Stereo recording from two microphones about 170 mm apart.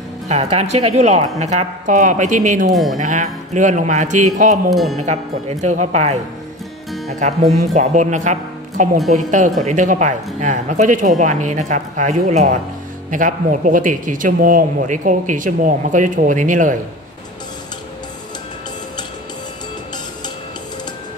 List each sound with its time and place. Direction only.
0.3 s a man's voice: 40° right (ahead or behind)
2.7 s speech: centre (ahead or behind)
3.0 s a man's voice: 45° right (ahead or behind)
4.6 s speech: centre (ahead or behind)
4.9 s a man's voice: 40° right (ahead or behind)